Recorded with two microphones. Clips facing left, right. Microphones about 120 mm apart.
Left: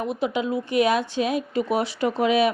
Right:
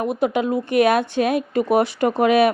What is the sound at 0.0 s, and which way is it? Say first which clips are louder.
Speech: right 5 dB; 55° right (ahead or behind).